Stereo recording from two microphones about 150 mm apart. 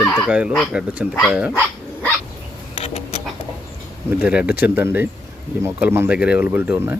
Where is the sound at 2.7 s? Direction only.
45° left (ahead or behind).